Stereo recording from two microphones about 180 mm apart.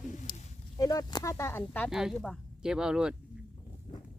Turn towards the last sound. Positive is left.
turn(degrees=-5)  # may be behind; listen again after turning